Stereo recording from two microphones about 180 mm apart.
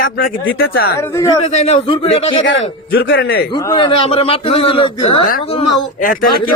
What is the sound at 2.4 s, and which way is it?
A man's voice, 90° left.